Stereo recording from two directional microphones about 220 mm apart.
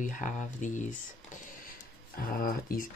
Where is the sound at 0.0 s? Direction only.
35° left (ahead or behind).